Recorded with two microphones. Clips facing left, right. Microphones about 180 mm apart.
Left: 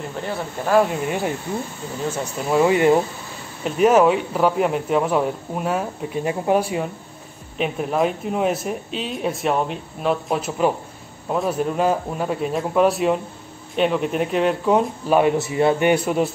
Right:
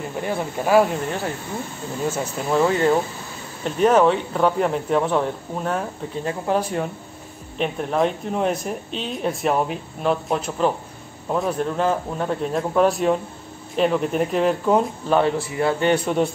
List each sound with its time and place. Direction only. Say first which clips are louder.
0.2 s speech: right 3 dB; 10° right (ahead or behind)
1.0 s speech: left 3 dB; 10° left (ahead or behind)
2.0 s speech: right 1 dB; 5° right (ahead or behind)
2.5 s speech: left 3 dB; 15° left (ahead or behind); by 15.1 s centre (ahead or behind)
15.1 s a man's voice: left 3 dB; 20° left (ahead or behind)
15.9 s speech: left 1 dB; 5° left (ahead or behind)